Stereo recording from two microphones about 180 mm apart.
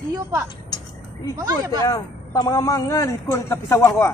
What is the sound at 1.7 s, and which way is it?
A man's voice, 20° left (ahead or behind).